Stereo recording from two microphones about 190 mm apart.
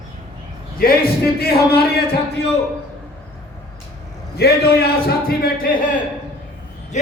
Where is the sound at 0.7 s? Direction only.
50° left (ahead or behind).